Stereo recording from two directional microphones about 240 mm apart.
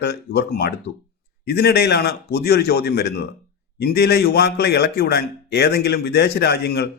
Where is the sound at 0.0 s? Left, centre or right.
Left.